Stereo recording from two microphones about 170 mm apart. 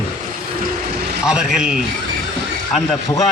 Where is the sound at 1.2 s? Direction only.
5° right (ahead or behind).